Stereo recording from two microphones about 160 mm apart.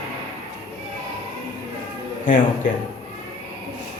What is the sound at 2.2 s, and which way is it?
Speech, 50° left (ahead or behind).